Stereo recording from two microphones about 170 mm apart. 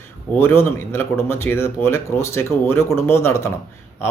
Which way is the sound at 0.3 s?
15° left (ahead or behind).